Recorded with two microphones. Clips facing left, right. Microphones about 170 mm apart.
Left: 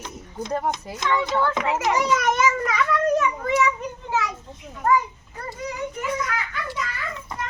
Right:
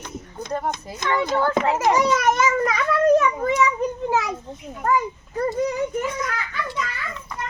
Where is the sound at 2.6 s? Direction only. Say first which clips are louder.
Right 4 dB; 40° right (ahead or behind).